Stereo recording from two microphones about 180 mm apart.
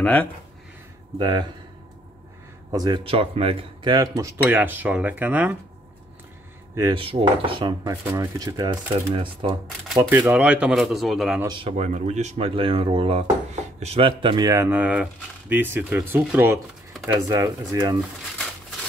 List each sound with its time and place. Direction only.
0.0 s speech: 10° left (ahead or behind)
1.1 s dishes: 25° right (ahead or behind)
2.7 s speech: 25° right (ahead or behind)
6.7 s dishes: 20° right (ahead or behind)
10.0 s speech: 10° right (ahead or behind)
11.7 s speech: 40° right (ahead or behind); by 16.5 s 10° right (ahead or behind)
17.0 s dishes: 15° right (ahead or behind)